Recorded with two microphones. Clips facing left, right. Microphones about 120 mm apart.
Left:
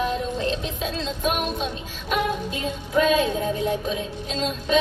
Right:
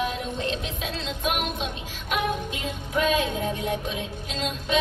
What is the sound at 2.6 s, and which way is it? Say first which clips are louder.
Music: left 5 dB; 35° left (ahead or behind).